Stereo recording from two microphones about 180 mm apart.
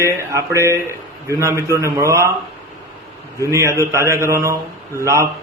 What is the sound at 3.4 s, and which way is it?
A man's voice, 15° right (ahead or behind).